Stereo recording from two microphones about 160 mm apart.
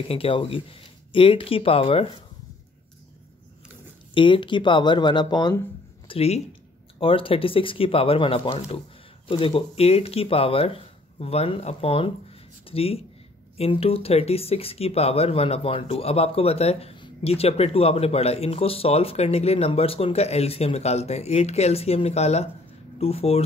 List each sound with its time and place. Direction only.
0.1 s speech: 35° left (ahead or behind)
4.1 s speech: 30° left (ahead or behind)
6.0 s speech: 40° left (ahead or behind)